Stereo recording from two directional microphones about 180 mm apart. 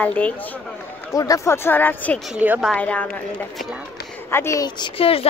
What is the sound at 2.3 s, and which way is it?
Speech, 10° right (ahead or behind).